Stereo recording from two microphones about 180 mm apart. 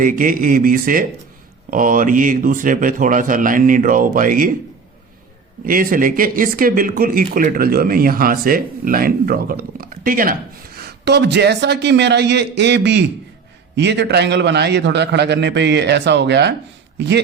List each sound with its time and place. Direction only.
0.0 s speech: 50° right (ahead or behind)
5.6 s speech: 50° right (ahead or behind)
11.0 s a man's voice: 70° right (ahead or behind)